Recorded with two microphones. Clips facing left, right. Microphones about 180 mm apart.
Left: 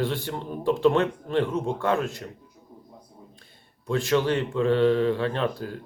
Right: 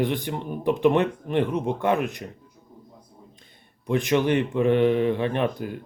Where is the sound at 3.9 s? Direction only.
20° right (ahead or behind).